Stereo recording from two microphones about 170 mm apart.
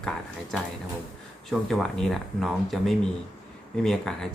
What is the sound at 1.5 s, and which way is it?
Speech, centre (ahead or behind).